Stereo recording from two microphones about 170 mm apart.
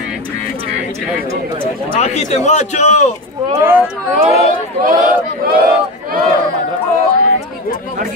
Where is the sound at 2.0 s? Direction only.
40° left (ahead or behind).